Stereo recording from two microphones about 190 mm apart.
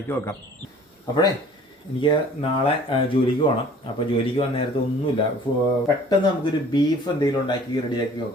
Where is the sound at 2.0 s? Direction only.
30° left (ahead or behind).